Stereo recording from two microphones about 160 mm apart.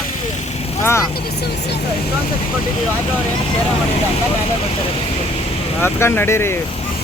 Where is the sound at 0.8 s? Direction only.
15° left (ahead or behind).